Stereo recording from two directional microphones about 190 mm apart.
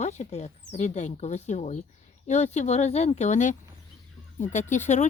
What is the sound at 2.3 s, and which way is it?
Speech, 35° left (ahead or behind).